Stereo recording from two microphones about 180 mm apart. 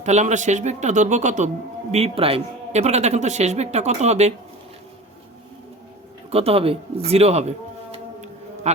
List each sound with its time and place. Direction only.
0.0 s speech: 40° right (ahead or behind)
6.3 s speech: 35° right (ahead or behind)
8.7 s speech: 40° right (ahead or behind)